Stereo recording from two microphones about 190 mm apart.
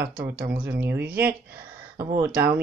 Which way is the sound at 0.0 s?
50° right (ahead or behind).